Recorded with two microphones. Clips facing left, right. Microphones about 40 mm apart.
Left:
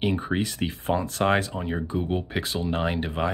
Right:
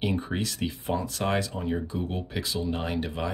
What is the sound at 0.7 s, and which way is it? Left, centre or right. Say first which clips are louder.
Speech: left 3 dB; left.